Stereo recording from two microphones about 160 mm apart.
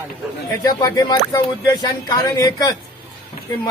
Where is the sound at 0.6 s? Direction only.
20° left (ahead or behind).